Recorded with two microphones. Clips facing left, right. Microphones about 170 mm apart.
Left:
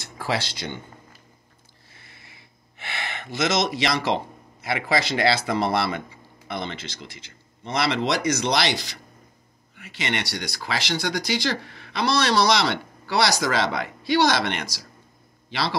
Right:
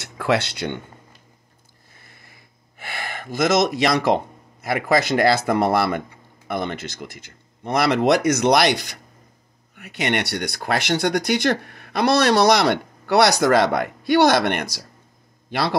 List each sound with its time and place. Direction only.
0.0 s speech: 65° right (ahead or behind)
2.0 s a sound: 45° right (ahead or behind)
4.6 s speech: 50° right (ahead or behind)